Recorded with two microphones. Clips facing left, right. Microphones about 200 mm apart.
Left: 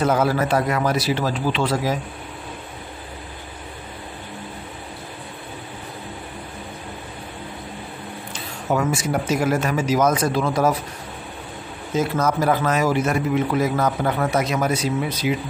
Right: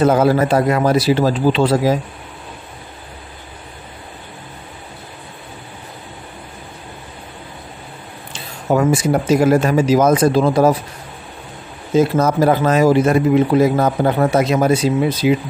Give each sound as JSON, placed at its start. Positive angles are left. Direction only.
{"t": 0.0, "sound": "speech", "side_deg": -30}
{"t": 8.3, "sound": "a sound", "side_deg": -30}
{"t": 9.1, "sound": "speech", "side_deg": -30}
{"t": 11.9, "sound": "speech", "side_deg": -30}